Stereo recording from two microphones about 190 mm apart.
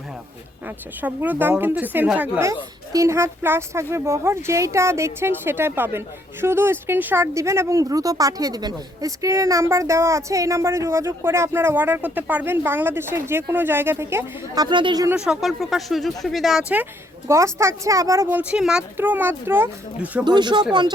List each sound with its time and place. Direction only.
1.0 s speech: 10° right (ahead or behind)
15.1 s speech: 5° right (ahead or behind)
20.2 s speech: 25° right (ahead or behind)